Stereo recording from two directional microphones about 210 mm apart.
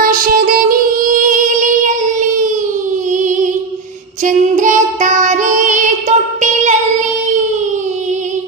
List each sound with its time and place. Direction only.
0.0 s music: 40° right (ahead or behind)